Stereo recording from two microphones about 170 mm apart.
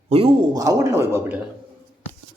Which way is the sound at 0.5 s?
20° right (ahead or behind).